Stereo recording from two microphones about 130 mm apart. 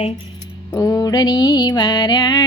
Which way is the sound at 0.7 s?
25° left (ahead or behind).